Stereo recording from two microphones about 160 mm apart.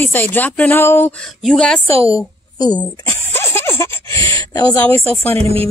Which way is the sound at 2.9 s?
15° left (ahead or behind).